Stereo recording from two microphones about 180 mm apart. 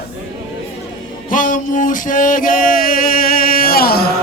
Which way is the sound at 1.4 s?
50° left (ahead or behind).